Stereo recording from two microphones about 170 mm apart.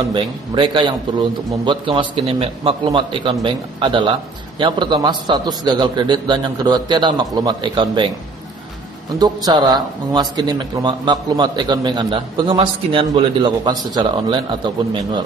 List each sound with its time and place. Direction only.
0.1 s speech: 30° right (ahead or behind)
9.2 s speech: 25° right (ahead or behind)